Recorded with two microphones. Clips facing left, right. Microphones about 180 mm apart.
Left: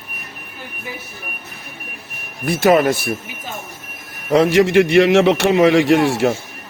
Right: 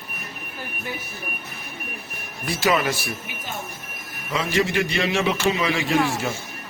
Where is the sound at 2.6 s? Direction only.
55° left (ahead or behind).